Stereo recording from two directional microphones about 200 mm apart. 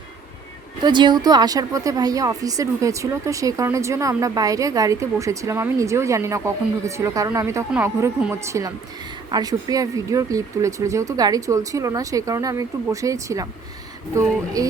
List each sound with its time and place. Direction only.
0.9 s a woman's voice: 25° right (ahead or behind)